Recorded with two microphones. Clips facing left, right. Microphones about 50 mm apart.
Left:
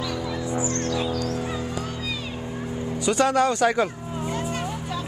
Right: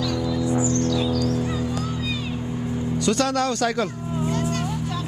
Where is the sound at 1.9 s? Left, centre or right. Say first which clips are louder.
Right 3 dB; centre.